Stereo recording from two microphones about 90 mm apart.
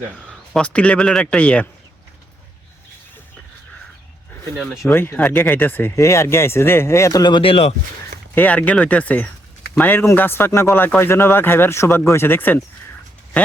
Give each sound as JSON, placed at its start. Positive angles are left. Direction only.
{"t": 0.3, "sound": "speech", "side_deg": 10}
{"t": 4.8, "sound": "speech", "side_deg": 30}
{"t": 7.2, "sound": "speech", "side_deg": 60}
{"t": 8.4, "sound": "speech", "side_deg": 15}